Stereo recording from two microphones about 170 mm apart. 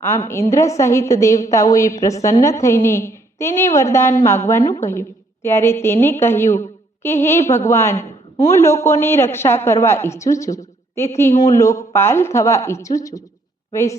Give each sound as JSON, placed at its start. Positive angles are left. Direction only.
{"t": 0.0, "sound": "a woman's voice", "side_deg": 15}